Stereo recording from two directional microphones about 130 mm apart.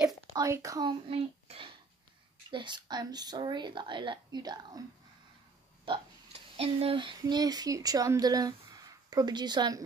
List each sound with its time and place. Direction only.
0.3 s speech: 25° right (ahead or behind)
1.0 s a child's voice: 45° right (ahead or behind)
2.5 s speech: 35° right (ahead or behind)
6.5 s speech: 50° right (ahead or behind); by 9.8 s 35° right (ahead or behind)